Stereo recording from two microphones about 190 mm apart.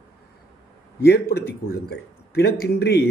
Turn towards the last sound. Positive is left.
turn(degrees=55)  # may be behind; listen again after turning